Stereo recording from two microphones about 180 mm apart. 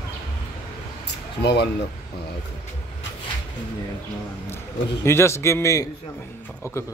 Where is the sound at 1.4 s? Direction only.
65° left (ahead or behind).